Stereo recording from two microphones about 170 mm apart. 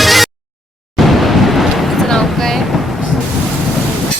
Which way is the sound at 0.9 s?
Centre (ahead or behind).